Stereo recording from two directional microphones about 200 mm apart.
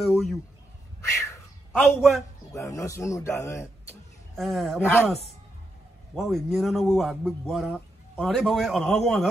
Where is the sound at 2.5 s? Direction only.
15° left (ahead or behind).